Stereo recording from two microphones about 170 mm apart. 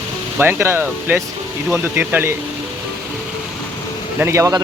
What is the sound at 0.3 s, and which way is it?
Speech, 15° right (ahead or behind).